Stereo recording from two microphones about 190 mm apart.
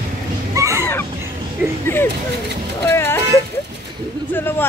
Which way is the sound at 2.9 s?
15° left (ahead or behind).